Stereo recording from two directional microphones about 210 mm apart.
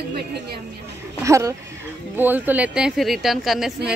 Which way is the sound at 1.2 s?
15° right (ahead or behind).